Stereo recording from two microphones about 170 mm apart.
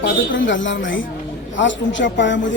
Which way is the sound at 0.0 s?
90° left.